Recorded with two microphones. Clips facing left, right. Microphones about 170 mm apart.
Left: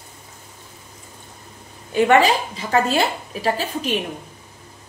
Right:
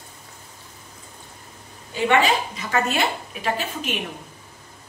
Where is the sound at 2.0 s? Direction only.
40° left (ahead or behind).